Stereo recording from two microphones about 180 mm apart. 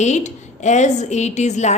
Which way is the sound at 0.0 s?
40° left (ahead or behind).